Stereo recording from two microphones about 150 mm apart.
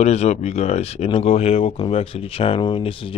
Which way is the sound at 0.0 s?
45° left (ahead or behind).